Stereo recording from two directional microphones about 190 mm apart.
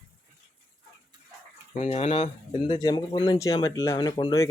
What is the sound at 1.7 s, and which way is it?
Speech, 35° left (ahead or behind).